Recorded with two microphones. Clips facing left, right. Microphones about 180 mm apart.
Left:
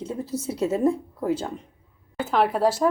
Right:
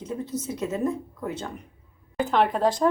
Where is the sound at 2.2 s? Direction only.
5° left (ahead or behind).